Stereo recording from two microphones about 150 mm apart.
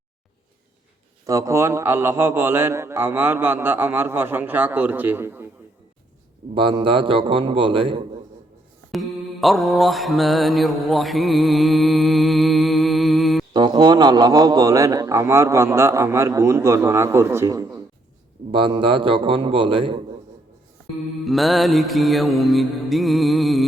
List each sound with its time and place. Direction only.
1.3 s a man's voice: 20° right (ahead or behind)
6.5 s a man's voice: 35° right (ahead or behind)
8.9 s mantra: centre (ahead or behind)
13.5 s a man's voice: 30° right (ahead or behind)
18.5 s a man's voice: 35° right (ahead or behind)
21.2 s music: centre (ahead or behind)